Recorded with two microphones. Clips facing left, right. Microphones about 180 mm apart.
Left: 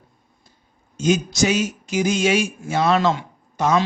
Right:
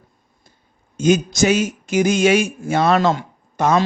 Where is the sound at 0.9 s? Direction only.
50° right (ahead or behind).